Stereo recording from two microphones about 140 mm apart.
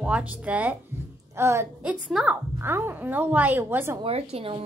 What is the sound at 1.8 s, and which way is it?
A woman's voice, 5° right (ahead or behind).